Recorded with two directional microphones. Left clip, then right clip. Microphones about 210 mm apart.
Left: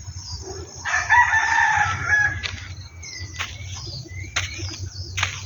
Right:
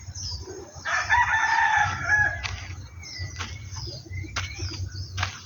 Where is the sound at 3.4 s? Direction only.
5° left (ahead or behind).